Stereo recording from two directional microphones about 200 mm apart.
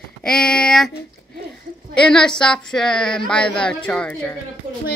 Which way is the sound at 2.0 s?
5° left (ahead or behind).